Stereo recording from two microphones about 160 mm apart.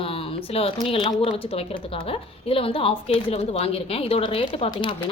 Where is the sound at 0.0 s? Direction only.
35° left (ahead or behind).